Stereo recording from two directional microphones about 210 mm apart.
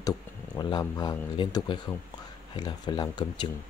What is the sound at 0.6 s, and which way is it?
Speech, 20° left (ahead or behind).